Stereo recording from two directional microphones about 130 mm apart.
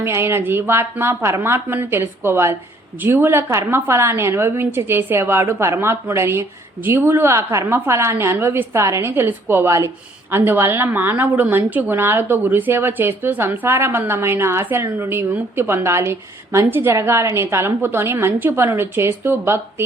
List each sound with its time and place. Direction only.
0.0 s a woman's voice: 20° right (ahead or behind)